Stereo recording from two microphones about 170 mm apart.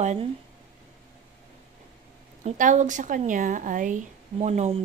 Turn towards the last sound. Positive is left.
turn(degrees=-40)  # may be behind; listen again after turning